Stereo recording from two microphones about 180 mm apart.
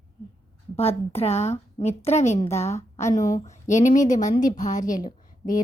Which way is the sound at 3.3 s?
40° left (ahead or behind).